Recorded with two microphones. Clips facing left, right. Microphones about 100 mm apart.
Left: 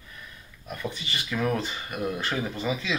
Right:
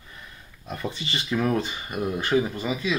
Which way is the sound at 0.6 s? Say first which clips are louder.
Right 2 dB; 30° right (ahead or behind).